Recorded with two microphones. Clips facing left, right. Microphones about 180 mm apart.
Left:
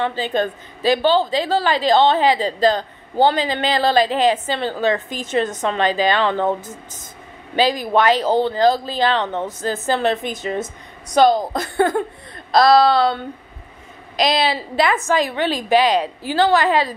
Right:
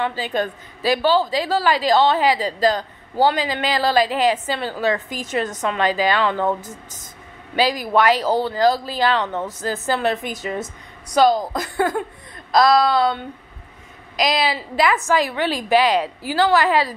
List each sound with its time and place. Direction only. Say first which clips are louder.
0.0 s a woman's voice: left 2 dB; 25° left (ahead or behind)
7.5 s a woman's voice: left 1 dB; 25° left (ahead or behind)